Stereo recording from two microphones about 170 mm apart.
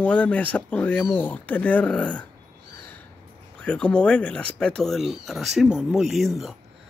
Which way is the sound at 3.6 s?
5° left (ahead or behind).